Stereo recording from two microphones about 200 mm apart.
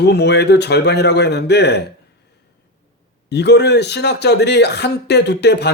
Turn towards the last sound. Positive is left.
turn(degrees=55)  # may be behind; listen again after turning